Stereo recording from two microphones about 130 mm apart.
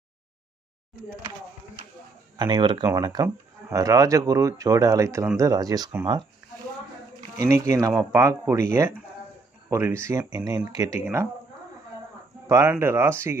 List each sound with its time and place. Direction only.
2.3 s speech: 35° right (ahead or behind)
7.3 s speech: 25° right (ahead or behind)
12.4 s speech: 25° right (ahead or behind)